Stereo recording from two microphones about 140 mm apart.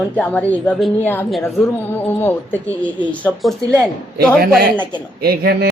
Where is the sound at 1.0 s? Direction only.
15° left (ahead or behind).